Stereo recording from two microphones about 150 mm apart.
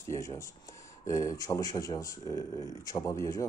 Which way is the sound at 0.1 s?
20° left (ahead or behind).